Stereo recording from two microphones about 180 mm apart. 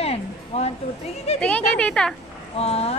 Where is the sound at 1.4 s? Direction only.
5° left (ahead or behind).